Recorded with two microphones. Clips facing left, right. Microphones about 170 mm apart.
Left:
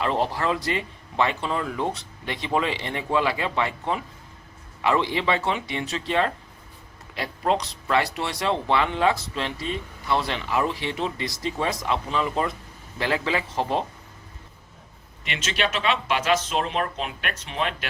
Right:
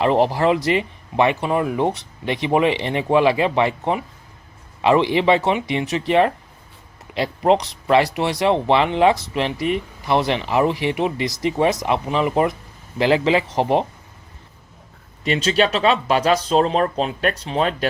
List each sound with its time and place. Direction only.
0.3 s a man's voice: 20° right (ahead or behind)
15.2 s speech: 35° right (ahead or behind)